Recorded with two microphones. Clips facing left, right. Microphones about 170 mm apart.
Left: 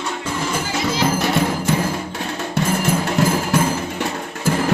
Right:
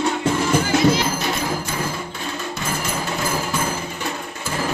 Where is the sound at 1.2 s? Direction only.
75° left (ahead or behind).